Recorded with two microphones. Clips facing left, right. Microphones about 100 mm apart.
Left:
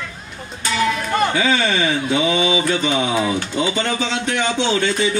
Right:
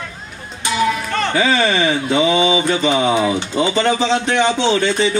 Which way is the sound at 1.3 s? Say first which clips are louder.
Right 3 dB; 35° right (ahead or behind).